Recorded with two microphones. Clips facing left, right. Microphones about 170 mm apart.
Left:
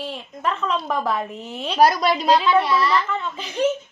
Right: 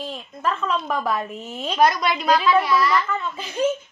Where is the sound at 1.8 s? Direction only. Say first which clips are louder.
Left 2 dB; 35° left (ahead or behind).